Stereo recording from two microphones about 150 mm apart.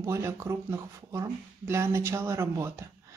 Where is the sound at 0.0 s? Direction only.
20° right (ahead or behind).